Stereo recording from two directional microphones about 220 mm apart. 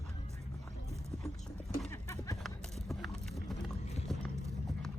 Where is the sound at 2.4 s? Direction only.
Centre (ahead or behind).